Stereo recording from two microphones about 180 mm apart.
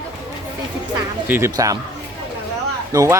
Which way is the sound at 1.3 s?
15° right (ahead or behind).